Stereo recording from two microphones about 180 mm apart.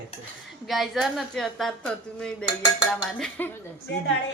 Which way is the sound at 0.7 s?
Centre (ahead or behind).